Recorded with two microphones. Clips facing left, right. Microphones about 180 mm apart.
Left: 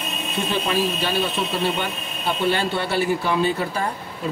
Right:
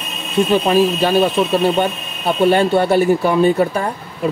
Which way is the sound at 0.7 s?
45° right (ahead or behind).